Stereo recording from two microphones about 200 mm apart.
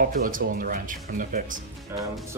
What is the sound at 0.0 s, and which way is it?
Speech, 45° right (ahead or behind).